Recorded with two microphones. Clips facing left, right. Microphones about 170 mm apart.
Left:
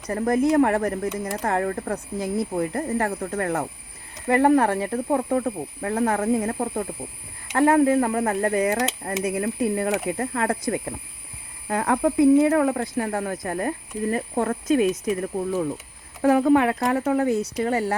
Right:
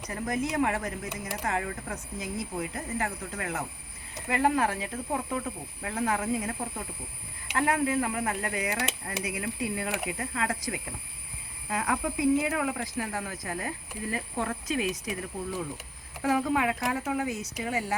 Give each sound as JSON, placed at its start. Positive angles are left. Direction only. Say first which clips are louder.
{"t": 0.1, "sound": "speech", "louder": "left 11 dB", "side_deg": 55}
{"t": 11.7, "sound": "speech", "louder": "left 8 dB", "side_deg": 55}
{"t": 16.2, "sound": "speech", "louder": "left 9 dB", "side_deg": 60}